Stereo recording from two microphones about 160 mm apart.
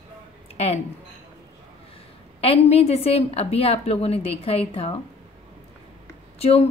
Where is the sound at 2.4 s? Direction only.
40° left (ahead or behind).